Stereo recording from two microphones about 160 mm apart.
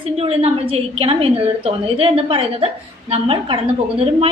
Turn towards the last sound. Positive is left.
turn(degrees=-35)  # may be behind; listen again after turning